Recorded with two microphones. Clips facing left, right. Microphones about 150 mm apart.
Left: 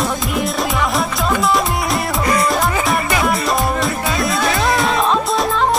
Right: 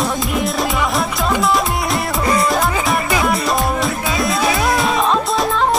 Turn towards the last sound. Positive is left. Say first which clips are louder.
# even
turn(degrees=0)  # may be behind; listen again after turning